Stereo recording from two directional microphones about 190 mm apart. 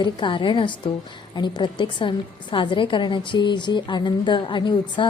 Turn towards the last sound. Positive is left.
turn(degrees=25)  # may be behind; listen again after turning